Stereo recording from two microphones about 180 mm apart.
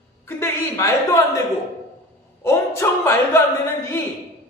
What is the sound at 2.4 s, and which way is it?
A man's voice, 15° left (ahead or behind).